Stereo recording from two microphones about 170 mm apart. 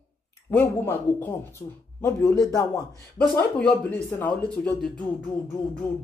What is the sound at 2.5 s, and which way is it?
Speech, 20° left (ahead or behind).